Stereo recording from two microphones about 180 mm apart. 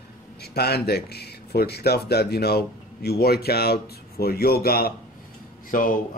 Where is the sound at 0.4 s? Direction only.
65° left (ahead or behind).